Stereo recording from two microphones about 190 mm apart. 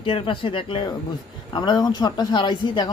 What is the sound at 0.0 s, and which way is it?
Speech, 30° left (ahead or behind).